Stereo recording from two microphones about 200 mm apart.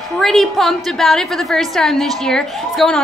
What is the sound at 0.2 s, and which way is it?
A woman's voice, centre (ahead or behind).